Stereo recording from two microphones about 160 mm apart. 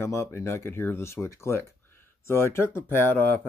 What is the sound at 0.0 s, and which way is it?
Speech, 15° left (ahead or behind).